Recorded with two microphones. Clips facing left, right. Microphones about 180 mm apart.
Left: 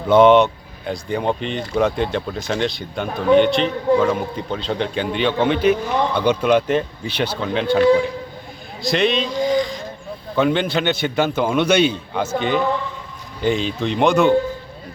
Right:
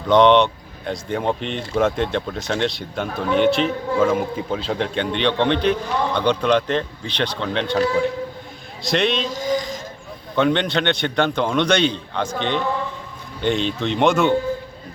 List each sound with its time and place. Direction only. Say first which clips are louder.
0.1 s speech: left 2 dB; 5° left (ahead or behind)
8.8 s speech: left 2 dB; centre (ahead or behind)
9.3 s a sound: left 4 dB; 45° right (ahead or behind)
10.3 s speech: left 1 dB; 5° left (ahead or behind)